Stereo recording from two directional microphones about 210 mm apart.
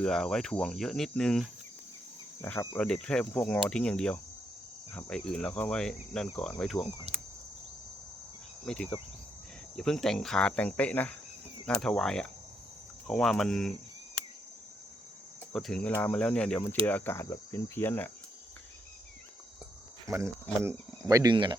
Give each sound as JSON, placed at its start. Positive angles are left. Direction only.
{"t": 0.0, "sound": "speech", "side_deg": 0}
{"t": 2.4, "sound": "cricket", "side_deg": 15}
{"t": 2.8, "sound": "speech", "side_deg": 5}
{"t": 7.1, "sound": "cricket", "side_deg": -30}
{"t": 8.6, "sound": "speech", "side_deg": 5}
{"t": 15.5, "sound": "speech", "side_deg": 0}
{"t": 16.8, "sound": "cricket", "side_deg": 10}
{"t": 20.1, "sound": "speech", "side_deg": -10}